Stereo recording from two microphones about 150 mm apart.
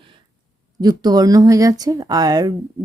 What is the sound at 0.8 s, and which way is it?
Speech, 25° right (ahead or behind).